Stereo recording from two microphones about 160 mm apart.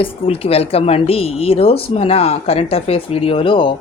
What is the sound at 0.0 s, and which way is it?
A woman's voice, 35° left (ahead or behind).